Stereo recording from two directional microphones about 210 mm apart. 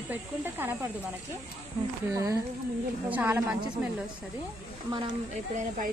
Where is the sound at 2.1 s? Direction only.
15° right (ahead or behind).